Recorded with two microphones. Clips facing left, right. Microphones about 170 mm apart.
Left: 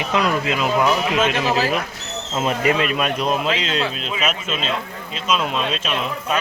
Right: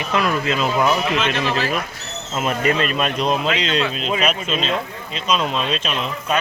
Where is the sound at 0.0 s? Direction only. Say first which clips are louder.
Even; 15° left (ahead or behind).